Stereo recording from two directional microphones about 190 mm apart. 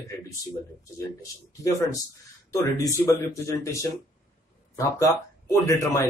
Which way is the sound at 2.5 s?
15° left (ahead or behind).